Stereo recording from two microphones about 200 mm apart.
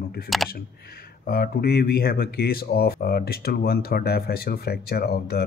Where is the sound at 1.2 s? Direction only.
50° left (ahead or behind).